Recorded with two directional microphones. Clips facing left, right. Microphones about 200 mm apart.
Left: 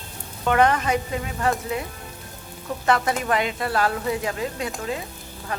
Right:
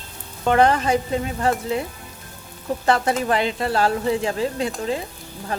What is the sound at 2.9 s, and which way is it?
Speech, 30° right (ahead or behind).